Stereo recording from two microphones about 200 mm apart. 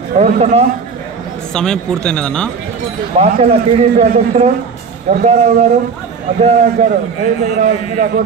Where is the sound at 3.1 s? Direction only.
30° right (ahead or behind).